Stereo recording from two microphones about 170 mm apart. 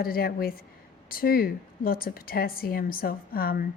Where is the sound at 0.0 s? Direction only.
60° left (ahead or behind).